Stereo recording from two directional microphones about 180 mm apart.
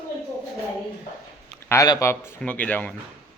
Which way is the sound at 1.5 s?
15° left (ahead or behind).